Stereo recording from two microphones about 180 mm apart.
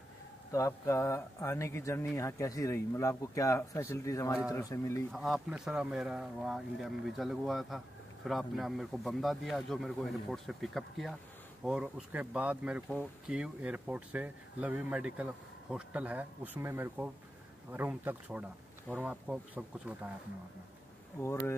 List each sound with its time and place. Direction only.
0.5 s speech: 15° left (ahead or behind)
5.1 s speech: centre (ahead or behind)
21.2 s speech: 15° left (ahead or behind)